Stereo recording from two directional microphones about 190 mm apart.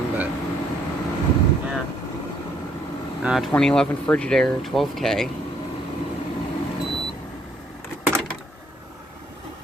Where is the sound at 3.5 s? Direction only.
5° left (ahead or behind).